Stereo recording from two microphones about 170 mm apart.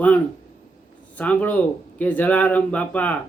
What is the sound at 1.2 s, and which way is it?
Speech, 10° left (ahead or behind).